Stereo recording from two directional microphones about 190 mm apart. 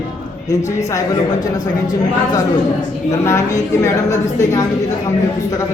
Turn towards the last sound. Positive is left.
turn(degrees=15)  # may be behind; listen again after turning